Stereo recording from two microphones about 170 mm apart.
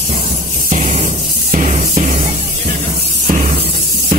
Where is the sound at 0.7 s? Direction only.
45° right (ahead or behind).